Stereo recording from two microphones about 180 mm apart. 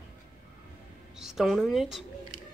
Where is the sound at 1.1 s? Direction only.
Centre (ahead or behind).